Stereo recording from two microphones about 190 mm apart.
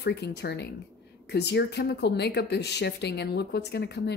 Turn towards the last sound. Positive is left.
turn(degrees=60)  # may be behind; listen again after turning